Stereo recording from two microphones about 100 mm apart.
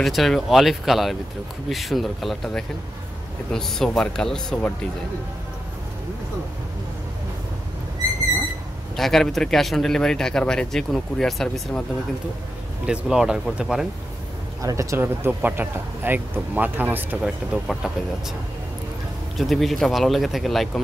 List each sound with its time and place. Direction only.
0.0 s speech: centre (ahead or behind)
8.9 s speech: 5° left (ahead or behind)
12.8 s speech: 5° right (ahead or behind)
14.6 s speech: 30° right (ahead or behind)
15.0 s speech: 20° right (ahead or behind)
17.2 s speech: centre (ahead or behind)
19.3 s speech: centre (ahead or behind)